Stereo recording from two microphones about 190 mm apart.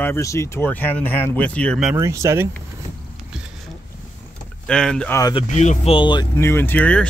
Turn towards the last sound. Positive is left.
turn(degrees=10)  # may be behind; listen again after turning